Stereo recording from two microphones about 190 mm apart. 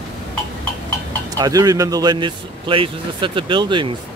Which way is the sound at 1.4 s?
20° right (ahead or behind).